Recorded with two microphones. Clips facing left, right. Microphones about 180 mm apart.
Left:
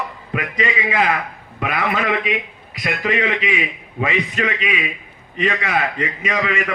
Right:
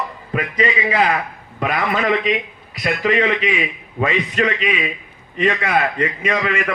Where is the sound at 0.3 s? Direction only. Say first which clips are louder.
Right 2 dB; 40° right (ahead or behind).